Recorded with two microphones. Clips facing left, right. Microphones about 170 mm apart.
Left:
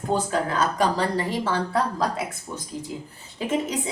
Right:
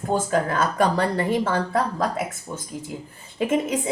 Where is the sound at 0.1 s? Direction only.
50° right (ahead or behind).